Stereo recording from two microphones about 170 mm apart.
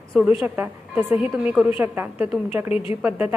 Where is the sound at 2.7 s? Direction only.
35° left (ahead or behind).